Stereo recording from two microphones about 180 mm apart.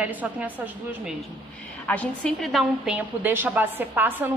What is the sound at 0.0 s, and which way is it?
Speech, 10° right (ahead or behind).